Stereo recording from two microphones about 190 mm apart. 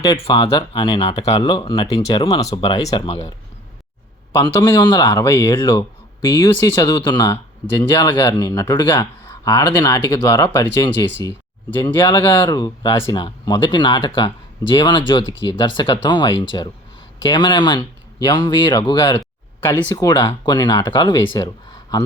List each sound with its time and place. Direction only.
0.0 s speech: 25° left (ahead or behind)
4.4 s speech: 25° left (ahead or behind)
12.5 s speech: 25° left (ahead or behind)
19.6 s speech: 10° left (ahead or behind)
21.3 s a sound: 20° left (ahead or behind)